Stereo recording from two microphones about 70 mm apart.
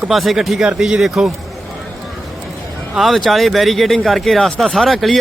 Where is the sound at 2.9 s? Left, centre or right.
Centre.